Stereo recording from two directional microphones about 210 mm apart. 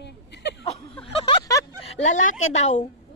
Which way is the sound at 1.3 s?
15° left (ahead or behind).